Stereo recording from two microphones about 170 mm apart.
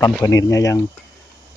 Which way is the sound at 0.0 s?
20° left (ahead or behind).